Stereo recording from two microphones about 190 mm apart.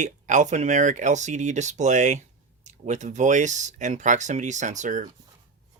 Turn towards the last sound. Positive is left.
turn(degrees=-40)  # may be behind; listen again after turning